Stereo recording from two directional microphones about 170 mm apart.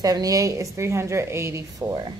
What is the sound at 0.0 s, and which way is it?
A woman's voice, 20° right (ahead or behind).